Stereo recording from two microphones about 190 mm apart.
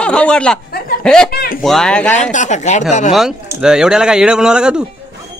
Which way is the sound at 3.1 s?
5° right (ahead or behind).